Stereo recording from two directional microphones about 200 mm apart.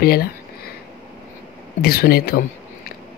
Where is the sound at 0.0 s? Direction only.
50° left (ahead or behind).